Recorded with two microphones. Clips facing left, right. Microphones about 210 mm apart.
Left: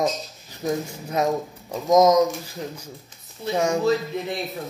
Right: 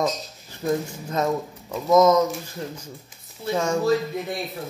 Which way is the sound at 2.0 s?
15° left (ahead or behind).